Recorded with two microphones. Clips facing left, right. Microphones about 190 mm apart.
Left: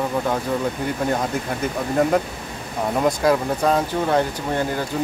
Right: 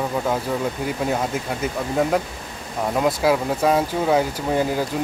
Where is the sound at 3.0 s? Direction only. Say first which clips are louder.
Left 1 dB; 5° right (ahead or behind).